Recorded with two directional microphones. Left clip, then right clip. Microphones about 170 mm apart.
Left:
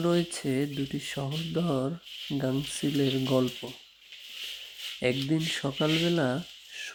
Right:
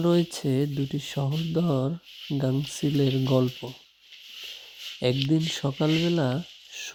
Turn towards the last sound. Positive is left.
turn(degrees=-25)  # may be behind; listen again after turning